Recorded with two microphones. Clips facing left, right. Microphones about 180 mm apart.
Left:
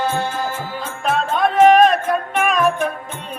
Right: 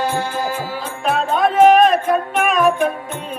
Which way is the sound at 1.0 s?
Centre (ahead or behind).